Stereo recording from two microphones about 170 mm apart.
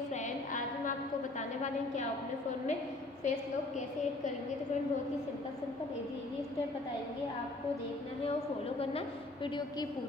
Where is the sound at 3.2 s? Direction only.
45° left (ahead or behind).